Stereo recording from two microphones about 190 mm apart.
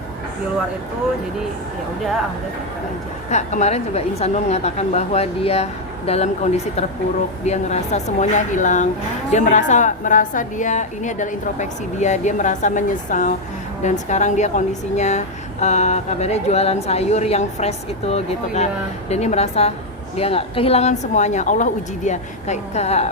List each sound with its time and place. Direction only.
3.2 s speech: 40° left (ahead or behind)